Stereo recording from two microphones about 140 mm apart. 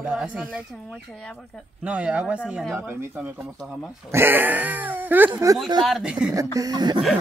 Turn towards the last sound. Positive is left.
turn(degrees=-30)  # may be behind; listen again after turning